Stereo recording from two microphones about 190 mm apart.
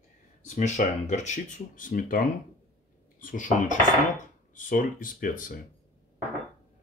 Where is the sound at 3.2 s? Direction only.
45° left (ahead or behind).